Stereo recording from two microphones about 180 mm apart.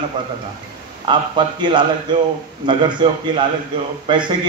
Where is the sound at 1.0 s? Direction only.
25° right (ahead or behind).